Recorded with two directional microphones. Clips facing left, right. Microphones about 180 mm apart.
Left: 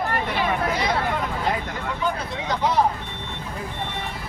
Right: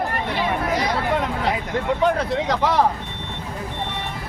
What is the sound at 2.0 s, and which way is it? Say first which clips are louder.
Speech: right 6 dB; 80° right.